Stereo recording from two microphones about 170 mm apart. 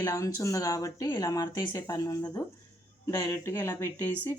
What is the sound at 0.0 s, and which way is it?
Speech, 20° left (ahead or behind).